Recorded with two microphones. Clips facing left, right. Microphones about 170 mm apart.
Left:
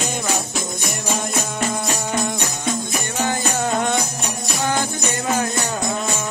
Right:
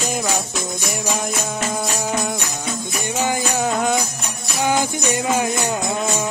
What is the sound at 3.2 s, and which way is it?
Music, 15° right (ahead or behind).